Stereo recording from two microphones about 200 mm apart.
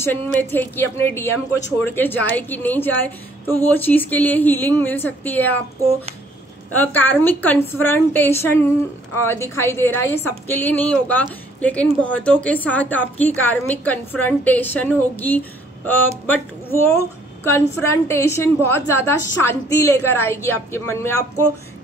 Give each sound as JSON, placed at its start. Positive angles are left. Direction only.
{"t": 0.0, "sound": "a woman's voice", "side_deg": 10}
{"t": 6.7, "sound": "a woman's voice", "side_deg": 10}
{"t": 16.7, "sound": "a woman's voice", "side_deg": 10}